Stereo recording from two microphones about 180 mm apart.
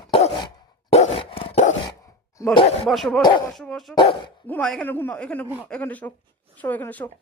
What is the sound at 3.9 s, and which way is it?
Dog, 30° left (ahead or behind).